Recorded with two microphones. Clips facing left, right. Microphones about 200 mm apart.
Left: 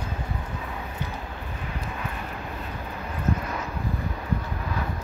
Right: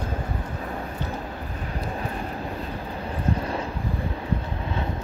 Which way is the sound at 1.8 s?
35° right (ahead or behind).